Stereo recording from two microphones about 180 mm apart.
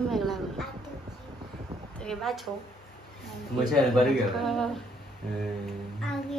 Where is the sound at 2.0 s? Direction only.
Centre (ahead or behind).